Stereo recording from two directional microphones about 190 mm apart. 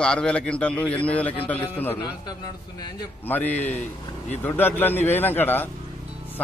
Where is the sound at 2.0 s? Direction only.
20° left (ahead or behind).